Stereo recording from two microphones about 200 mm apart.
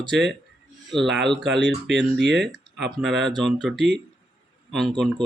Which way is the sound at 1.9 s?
60° right (ahead or behind).